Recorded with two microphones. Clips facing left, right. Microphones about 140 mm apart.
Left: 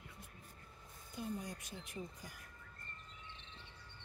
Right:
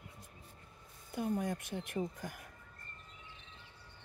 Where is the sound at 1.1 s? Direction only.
60° right (ahead or behind).